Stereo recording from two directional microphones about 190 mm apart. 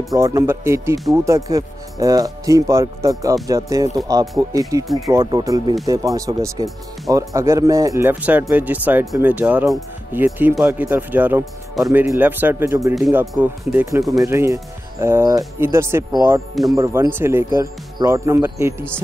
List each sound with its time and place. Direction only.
0.1 s speech: 15° right (ahead or behind)